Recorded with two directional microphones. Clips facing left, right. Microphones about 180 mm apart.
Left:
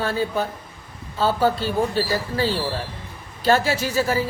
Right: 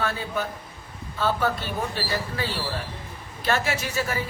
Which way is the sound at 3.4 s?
30° left (ahead or behind).